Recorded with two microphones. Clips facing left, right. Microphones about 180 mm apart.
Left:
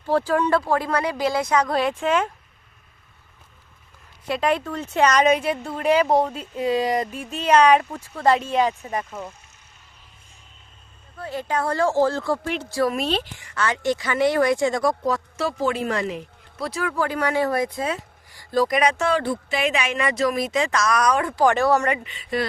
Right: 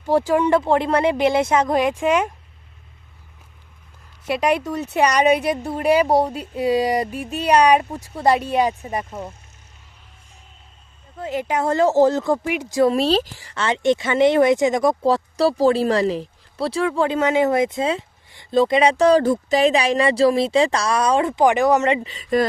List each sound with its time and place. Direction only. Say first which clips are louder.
0.1 s a woman's voice: right 3 dB; 15° right (ahead or behind)
4.3 s a woman's voice: right 3 dB; 15° right (ahead or behind)
9.0 s speech: right 2 dB; 25° right (ahead or behind)
11.2 s speech: right 3 dB; 15° right (ahead or behind)
12.9 s speech: right 6 dB; 35° right (ahead or behind)
22.0 s speech: right 6 dB; 40° right (ahead or behind)